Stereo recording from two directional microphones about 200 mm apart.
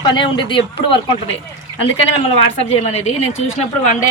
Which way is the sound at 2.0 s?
30° left (ahead or behind).